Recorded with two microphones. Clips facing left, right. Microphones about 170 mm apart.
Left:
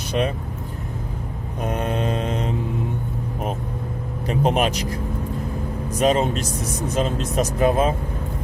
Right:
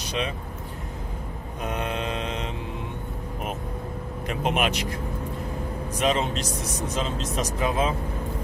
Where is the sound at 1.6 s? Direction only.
45° left (ahead or behind).